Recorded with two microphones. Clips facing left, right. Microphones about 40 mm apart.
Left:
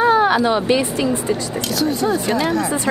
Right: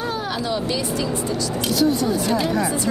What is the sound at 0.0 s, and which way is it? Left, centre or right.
Speech, left.